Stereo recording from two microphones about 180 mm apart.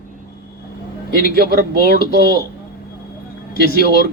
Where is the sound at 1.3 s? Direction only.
60° right (ahead or behind).